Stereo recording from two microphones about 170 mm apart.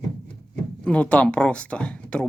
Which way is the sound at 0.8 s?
5° left (ahead or behind).